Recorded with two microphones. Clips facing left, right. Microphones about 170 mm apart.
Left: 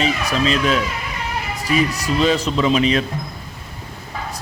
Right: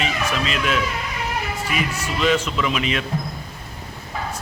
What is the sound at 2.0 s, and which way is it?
Speech, 35° left (ahead or behind).